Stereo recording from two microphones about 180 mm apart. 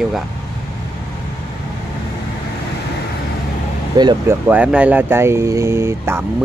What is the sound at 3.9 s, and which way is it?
Speech, 25° right (ahead or behind).